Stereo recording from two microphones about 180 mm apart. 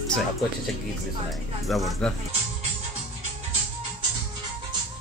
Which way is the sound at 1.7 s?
Centre (ahead or behind).